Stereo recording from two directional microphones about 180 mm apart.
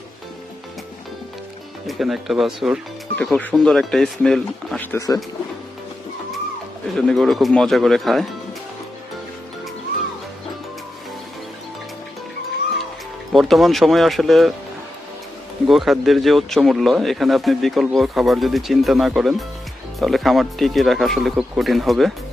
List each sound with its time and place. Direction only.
1.9 s speech: centre (ahead or behind); by 5.2 s 20° left (ahead or behind)
6.9 s speech: centre (ahead or behind)
13.3 s speech: centre (ahead or behind)
15.6 s speech: centre (ahead or behind)